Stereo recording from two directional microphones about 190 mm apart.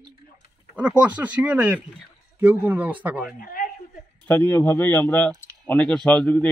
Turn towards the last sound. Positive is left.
turn(degrees=5)  # may be behind; listen again after turning